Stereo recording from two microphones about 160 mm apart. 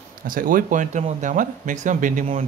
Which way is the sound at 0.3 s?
60° right (ahead or behind).